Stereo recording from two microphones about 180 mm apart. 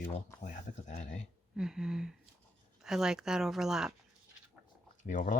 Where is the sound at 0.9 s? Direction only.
45° left (ahead or behind).